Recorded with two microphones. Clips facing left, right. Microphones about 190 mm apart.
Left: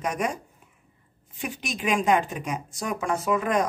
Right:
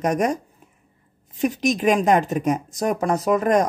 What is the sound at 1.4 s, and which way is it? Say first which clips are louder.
Speech: right 11 dB; 40° right (ahead or behind).